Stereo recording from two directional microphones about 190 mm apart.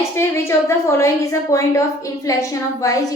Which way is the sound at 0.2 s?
15° left (ahead or behind).